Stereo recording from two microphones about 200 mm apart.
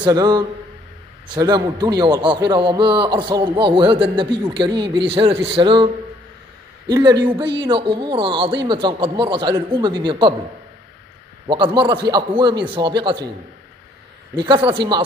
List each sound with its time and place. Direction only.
0.0 s a man's voice: 20° right (ahead or behind)
6.9 s a man's voice: 20° right (ahead or behind)
11.4 s a man's voice: 25° right (ahead or behind)
14.3 s a man's voice: 25° right (ahead or behind)